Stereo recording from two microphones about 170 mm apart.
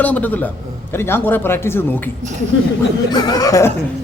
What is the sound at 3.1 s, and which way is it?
Speech, 25° left (ahead or behind).